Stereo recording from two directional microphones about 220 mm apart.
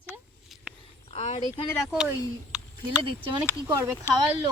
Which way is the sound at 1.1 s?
30° left (ahead or behind).